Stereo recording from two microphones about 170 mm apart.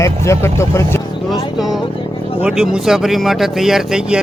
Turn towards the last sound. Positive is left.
turn(degrees=-5)  # may be behind; listen again after turning